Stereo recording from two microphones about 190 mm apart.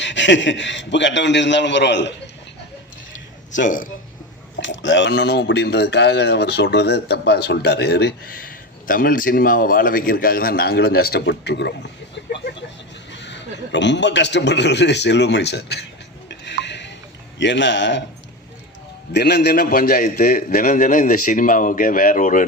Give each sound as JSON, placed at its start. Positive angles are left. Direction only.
{"t": 0.0, "sound": "a man's voice", "side_deg": 70}
{"t": 3.5, "sound": "a man's voice", "side_deg": 45}
{"t": 4.6, "sound": "speech", "side_deg": 80}
{"t": 13.1, "sound": "speech", "side_deg": 70}
{"t": 16.3, "sound": "a sound", "side_deg": 65}
{"t": 17.3, "sound": "a man's voice", "side_deg": 70}
{"t": 19.1, "sound": "a man's voice", "side_deg": 55}